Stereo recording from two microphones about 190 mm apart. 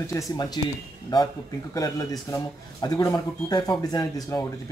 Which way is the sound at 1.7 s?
20° left (ahead or behind).